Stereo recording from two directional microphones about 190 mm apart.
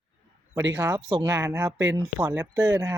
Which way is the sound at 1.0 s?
30° right (ahead or behind).